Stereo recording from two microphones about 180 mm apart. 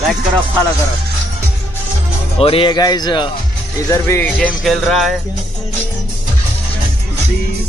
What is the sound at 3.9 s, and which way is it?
Speech, 15° left (ahead or behind).